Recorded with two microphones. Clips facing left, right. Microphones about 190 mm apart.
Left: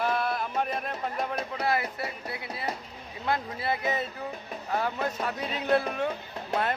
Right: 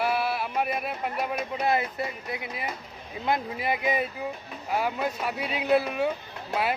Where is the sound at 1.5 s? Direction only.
20° right (ahead or behind).